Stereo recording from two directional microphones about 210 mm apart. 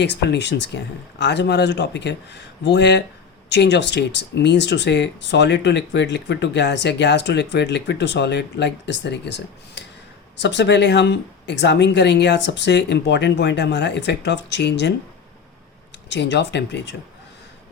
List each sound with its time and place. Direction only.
0.0 s speech: 55° left (ahead or behind)
16.0 s speech: 55° left (ahead or behind)